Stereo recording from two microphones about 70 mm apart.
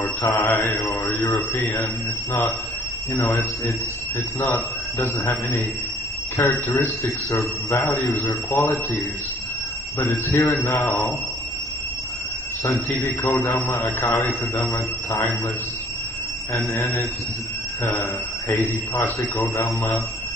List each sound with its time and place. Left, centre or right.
0.0 s mantra: left
0.5 s speech: left
1.0 s a sound: left
3.3 s a man's voice: left
8.1 s speech: left
9.9 s speech: left
13.0 s a man's voice: left
16.5 s speech: left